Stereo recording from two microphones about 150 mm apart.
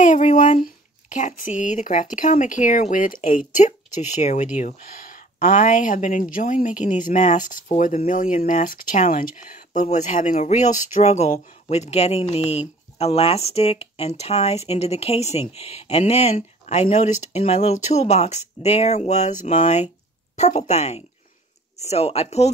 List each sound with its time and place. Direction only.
0.0 s speech: 55° left (ahead or behind)
4.6 s speech: 65° left (ahead or behind); by 22.5 s 45° left (ahead or behind)